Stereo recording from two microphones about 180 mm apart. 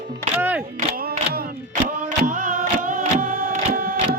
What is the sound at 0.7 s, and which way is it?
Music, 55° right (ahead or behind).